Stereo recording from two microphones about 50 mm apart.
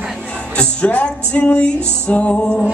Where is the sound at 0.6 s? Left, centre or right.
Left.